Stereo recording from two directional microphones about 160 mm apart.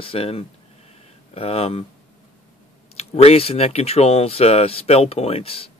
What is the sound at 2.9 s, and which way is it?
Speech, 40° left (ahead or behind).